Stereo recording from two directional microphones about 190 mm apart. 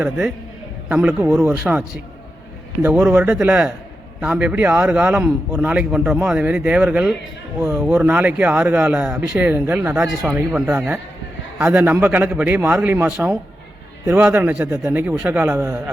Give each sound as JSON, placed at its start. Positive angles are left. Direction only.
{"t": 0.0, "sound": "a man's voice", "side_deg": -5}
{"t": 2.8, "sound": "a man's voice", "side_deg": -10}